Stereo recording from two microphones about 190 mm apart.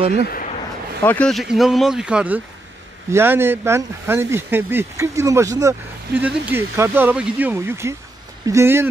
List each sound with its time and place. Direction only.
0.2 s speech: 50° left (ahead or behind)
1.0 s speech: 5° left (ahead or behind); by 8.8 s 15° right (ahead or behind)